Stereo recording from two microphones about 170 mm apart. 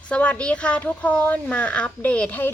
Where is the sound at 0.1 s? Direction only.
5° left (ahead or behind).